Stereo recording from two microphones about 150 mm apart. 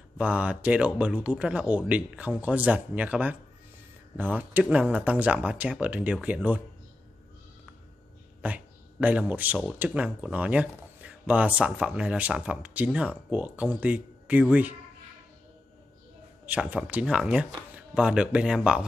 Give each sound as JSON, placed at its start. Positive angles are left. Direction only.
{"t": 0.2, "sound": "speech", "side_deg": -10}
{"t": 8.4, "sound": "speech", "side_deg": -10}
{"t": 16.4, "sound": "speech", "side_deg": -10}